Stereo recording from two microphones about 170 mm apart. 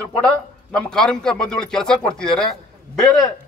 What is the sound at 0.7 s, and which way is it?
Speech, 5° left (ahead or behind).